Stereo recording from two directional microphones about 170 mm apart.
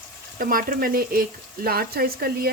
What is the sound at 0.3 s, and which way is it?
Speech, 55° right (ahead or behind).